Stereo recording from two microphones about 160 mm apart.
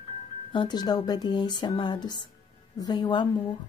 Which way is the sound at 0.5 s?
25° left (ahead or behind).